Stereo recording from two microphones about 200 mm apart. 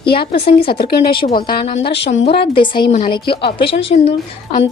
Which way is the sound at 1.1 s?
25° left (ahead or behind).